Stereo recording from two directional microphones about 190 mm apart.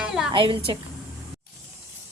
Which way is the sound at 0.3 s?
25° right (ahead or behind).